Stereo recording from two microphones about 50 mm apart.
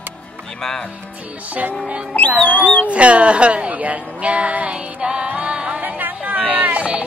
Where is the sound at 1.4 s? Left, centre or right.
Right.